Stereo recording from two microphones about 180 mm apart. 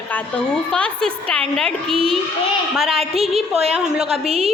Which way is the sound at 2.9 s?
35° right (ahead or behind).